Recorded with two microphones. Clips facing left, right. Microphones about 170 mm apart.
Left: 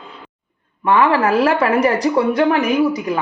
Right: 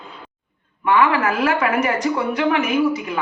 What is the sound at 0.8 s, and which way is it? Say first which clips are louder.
Speech: left 3 dB; 35° left (ahead or behind).